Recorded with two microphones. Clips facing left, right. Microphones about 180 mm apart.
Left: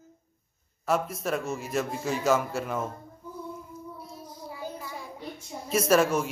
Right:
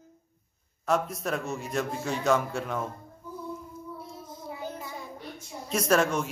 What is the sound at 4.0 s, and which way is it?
Child singing, 25° right (ahead or behind).